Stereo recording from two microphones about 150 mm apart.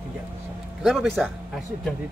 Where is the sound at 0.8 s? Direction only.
Centre (ahead or behind).